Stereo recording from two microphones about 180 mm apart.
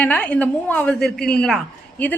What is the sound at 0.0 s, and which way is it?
A woman's voice, 10° left (ahead or behind).